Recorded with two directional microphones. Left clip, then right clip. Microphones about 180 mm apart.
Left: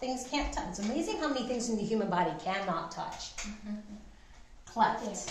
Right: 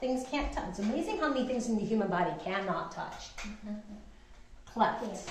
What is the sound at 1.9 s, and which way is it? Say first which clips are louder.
A woman's voice: left 1 dB; 15° left (ahead or behind).